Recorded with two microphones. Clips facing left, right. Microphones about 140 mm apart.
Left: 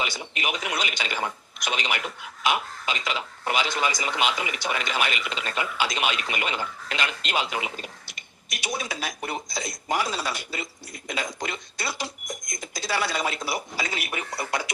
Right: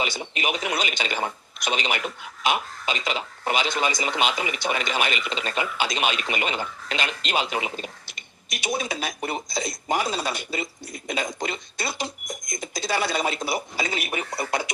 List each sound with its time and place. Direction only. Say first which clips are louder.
0.0 s speech: right 2 dB; 25° right (ahead or behind)